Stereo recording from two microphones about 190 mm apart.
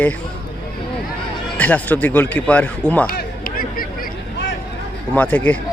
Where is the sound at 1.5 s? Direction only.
5° left (ahead or behind).